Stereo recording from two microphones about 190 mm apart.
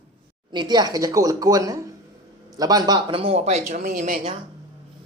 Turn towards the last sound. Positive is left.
turn(degrees=-45)  # may be behind; listen again after turning